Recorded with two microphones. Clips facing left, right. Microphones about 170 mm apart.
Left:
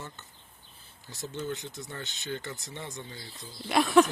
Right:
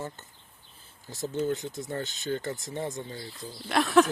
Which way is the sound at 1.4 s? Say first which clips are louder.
Right 6 dB; 45° right (ahead or behind).